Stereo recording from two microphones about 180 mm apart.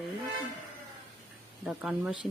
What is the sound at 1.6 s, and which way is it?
Speech, 5° right (ahead or behind).